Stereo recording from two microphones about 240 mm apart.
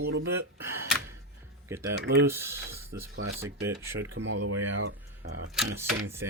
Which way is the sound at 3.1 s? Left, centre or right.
Right.